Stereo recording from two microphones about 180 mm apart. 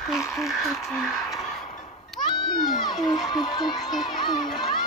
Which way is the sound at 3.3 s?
25° left (ahead or behind).